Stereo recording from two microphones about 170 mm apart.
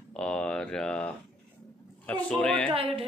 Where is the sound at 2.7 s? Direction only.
30° right (ahead or behind).